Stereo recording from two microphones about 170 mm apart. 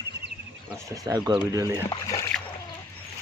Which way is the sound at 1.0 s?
20° right (ahead or behind).